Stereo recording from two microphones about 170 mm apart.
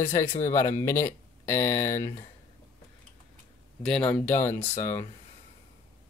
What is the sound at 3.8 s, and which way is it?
Speech, 5° left (ahead or behind).